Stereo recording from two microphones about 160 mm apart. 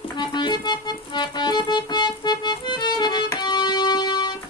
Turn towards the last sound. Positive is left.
turn(degrees=25)  # may be behind; listen again after turning